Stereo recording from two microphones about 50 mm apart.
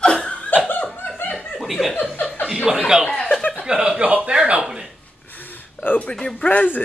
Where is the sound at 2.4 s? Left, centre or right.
Centre.